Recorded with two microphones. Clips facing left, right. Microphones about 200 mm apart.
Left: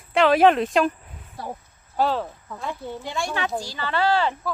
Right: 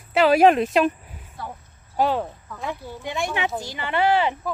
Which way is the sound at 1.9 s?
15° right (ahead or behind).